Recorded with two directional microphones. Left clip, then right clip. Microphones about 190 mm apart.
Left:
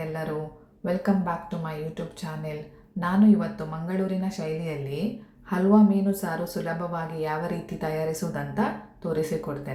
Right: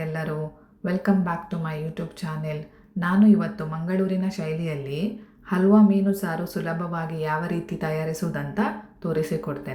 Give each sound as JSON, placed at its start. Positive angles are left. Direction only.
{"t": 0.9, "sound": "a woman's voice", "side_deg": -10}